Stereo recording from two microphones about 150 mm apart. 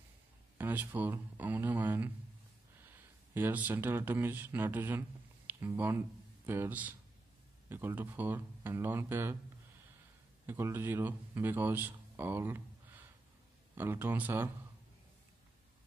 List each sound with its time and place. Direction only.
0.6 s speech: 15° right (ahead or behind)
3.3 s speech: 15° right (ahead or behind)
10.4 s speech: 15° right (ahead or behind)